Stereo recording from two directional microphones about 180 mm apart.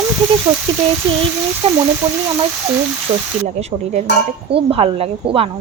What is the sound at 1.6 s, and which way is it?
Speech, 35° right (ahead or behind).